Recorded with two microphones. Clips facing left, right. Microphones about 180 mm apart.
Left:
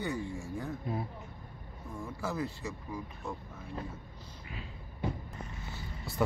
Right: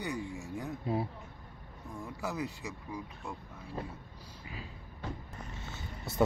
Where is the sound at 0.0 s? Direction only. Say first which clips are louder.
Left 2 dB; 15° right (ahead or behind).